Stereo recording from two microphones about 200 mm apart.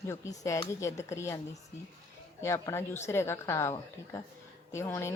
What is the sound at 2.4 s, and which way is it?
A woman's voice, 15° left (ahead or behind).